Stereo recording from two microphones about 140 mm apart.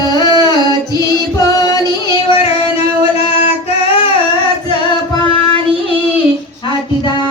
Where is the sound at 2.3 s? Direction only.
45° left (ahead or behind).